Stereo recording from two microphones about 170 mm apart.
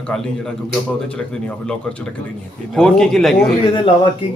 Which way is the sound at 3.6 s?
30° left (ahead or behind).